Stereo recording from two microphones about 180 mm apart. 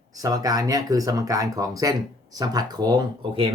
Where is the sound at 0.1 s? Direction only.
20° right (ahead or behind).